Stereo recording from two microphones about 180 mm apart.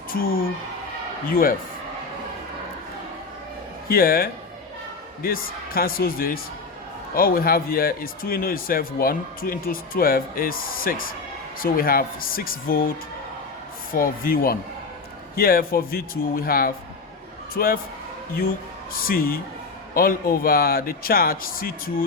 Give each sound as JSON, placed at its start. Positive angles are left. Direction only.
{"t": 0.1, "sound": "speech", "side_deg": 55}
{"t": 3.8, "sound": "a man's voice", "side_deg": 55}
{"t": 13.9, "sound": "a man's voice", "side_deg": 55}
{"t": 19.0, "sound": "a man's voice", "side_deg": 55}